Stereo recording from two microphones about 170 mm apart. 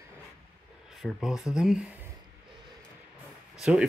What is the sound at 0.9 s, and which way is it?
Speech, centre (ahead or behind).